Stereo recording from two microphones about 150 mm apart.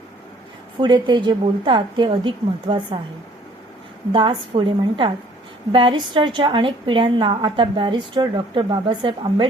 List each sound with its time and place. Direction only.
0.8 s a woman's voice: 30° right (ahead or behind)
4.1 s a woman's voice: 35° right (ahead or behind)